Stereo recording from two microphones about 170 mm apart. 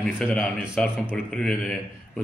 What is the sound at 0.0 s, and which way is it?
Speech, centre (ahead or behind).